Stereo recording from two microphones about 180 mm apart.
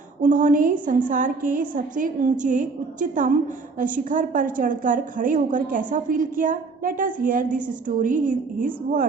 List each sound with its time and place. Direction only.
0.2 s a woman's voice: 45° right (ahead or behind)